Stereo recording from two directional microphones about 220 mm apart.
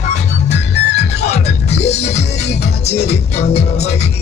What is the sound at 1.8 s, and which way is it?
Music, 30° left (ahead or behind).